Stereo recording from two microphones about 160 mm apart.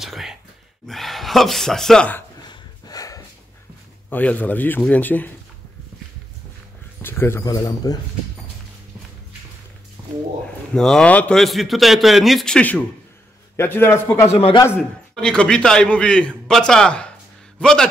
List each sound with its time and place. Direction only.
0.0 s a man's voice: centre (ahead or behind)
2.4 s dog: 25° left (ahead or behind)
4.1 s a man's voice: 10° left (ahead or behind)
7.0 s speech: 15° left (ahead or behind)
10.7 s a man's voice: 5° left (ahead or behind)
14.3 s a man's voice: 35° left (ahead or behind)
14.8 s a man's voice: 5° left (ahead or behind)